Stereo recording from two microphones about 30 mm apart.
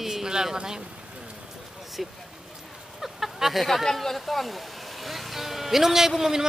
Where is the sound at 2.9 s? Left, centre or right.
Centre.